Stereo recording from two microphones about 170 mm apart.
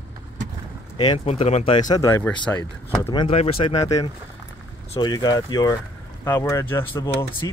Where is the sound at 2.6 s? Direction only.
30° left (ahead or behind).